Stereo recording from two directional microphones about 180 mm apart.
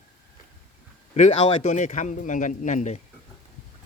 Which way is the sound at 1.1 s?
40° left (ahead or behind).